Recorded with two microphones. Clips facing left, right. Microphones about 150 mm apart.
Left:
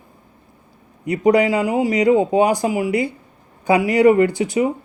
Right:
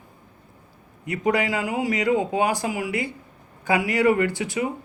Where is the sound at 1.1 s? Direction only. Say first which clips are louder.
Left 8 dB; 35° left (ahead or behind).